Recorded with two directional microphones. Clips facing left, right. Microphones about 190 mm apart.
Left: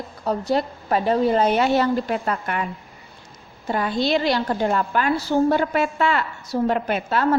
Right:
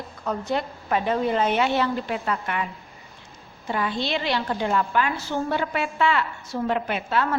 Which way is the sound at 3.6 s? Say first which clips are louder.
Left 5 dB; 40° left (ahead or behind).